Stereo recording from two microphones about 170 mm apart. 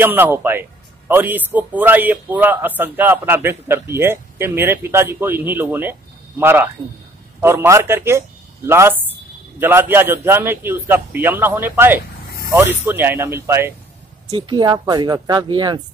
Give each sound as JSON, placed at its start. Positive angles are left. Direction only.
{"t": 0.0, "sound": "a man's voice", "side_deg": -10}
{"t": 14.2, "sound": "speech", "side_deg": -25}